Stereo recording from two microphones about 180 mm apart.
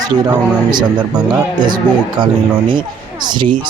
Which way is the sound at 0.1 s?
25° right (ahead or behind).